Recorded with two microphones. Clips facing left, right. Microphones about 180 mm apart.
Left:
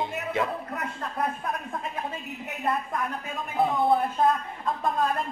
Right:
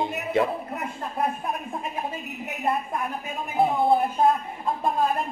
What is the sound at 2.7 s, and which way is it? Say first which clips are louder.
A woman's voice: right 1 dB; 15° right (ahead or behind).